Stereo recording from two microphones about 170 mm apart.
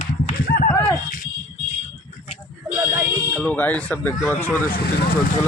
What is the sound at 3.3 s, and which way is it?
Speech, 5° left (ahead or behind).